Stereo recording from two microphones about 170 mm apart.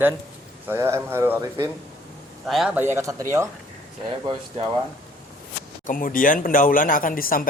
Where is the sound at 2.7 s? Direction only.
15° right (ahead or behind).